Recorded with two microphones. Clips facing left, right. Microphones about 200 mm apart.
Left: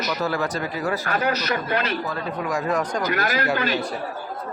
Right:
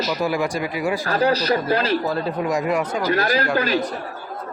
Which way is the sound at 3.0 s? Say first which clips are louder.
Right 3 dB; 30° right (ahead or behind).